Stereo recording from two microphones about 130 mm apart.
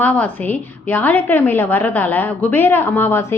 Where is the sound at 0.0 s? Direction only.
10° left (ahead or behind).